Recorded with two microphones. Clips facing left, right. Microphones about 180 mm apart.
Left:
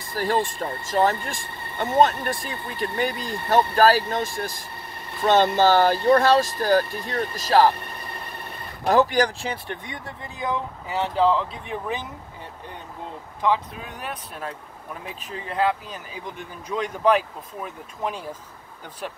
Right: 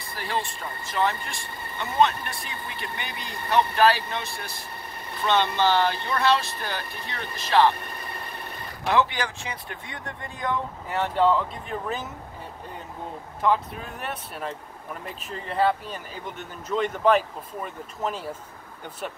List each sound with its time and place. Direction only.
0.1 s speech: 45° left (ahead or behind)
8.8 s speech: 40° left (ahead or behind)
10.9 s speech: centre (ahead or behind)
13.4 s speech: centre (ahead or behind)